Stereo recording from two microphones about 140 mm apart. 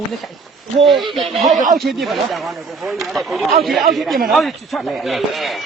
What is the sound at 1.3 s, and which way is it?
Speech, centre (ahead or behind).